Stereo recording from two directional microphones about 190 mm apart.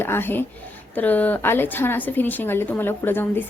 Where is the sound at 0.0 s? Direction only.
10° left (ahead or behind).